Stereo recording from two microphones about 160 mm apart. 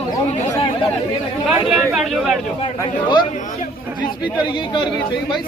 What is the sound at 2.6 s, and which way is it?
Speech, 30° left (ahead or behind).